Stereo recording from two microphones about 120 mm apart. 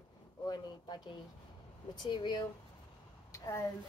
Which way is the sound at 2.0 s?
40° left (ahead or behind).